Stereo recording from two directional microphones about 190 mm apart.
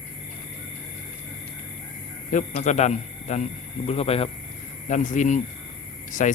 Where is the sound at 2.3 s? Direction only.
40° left (ahead or behind).